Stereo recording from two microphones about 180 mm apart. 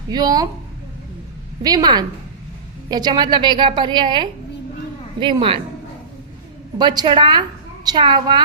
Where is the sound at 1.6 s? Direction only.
20° right (ahead or behind).